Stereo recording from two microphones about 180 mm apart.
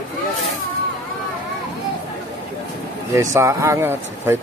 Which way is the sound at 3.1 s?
15° right (ahead or behind).